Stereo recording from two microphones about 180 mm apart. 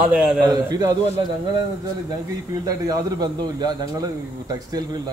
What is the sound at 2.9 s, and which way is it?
A man's voice, 20° right (ahead or behind).